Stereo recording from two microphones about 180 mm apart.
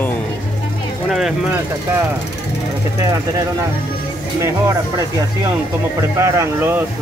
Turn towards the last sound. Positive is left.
turn(degrees=-15)  # may be behind; listen again after turning